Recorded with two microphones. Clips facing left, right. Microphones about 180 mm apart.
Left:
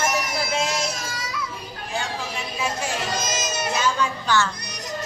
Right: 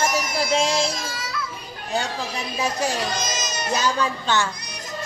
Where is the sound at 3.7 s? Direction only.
35° right (ahead or behind).